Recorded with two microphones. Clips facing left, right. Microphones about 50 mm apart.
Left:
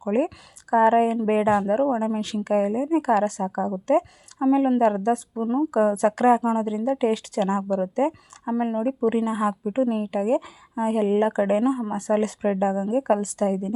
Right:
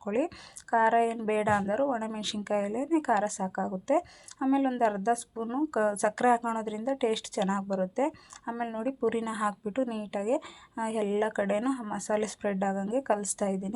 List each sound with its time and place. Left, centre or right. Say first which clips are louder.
0.0 s speech: left 6 dB; left
0.7 s speech: left 6 dB; left
4.4 s speech: left 7 dB; left
6.4 s speech: left 8 dB; left
6.8 s speech: left 3 dB; left
8.5 s speech: left 9 dB; centre; by 9.6 s left
9.6 s speech: left 7 dB; centre
9.9 s speech: left 7 dB; left